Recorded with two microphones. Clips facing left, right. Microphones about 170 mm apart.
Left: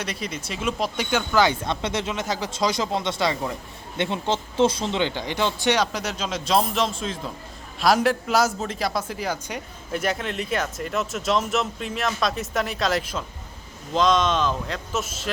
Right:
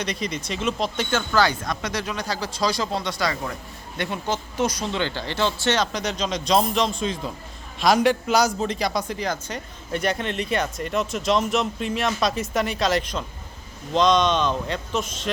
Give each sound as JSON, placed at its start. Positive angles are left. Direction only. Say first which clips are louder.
{"t": 0.0, "sound": "a man's voice", "louder": "right 3 dB", "side_deg": 5}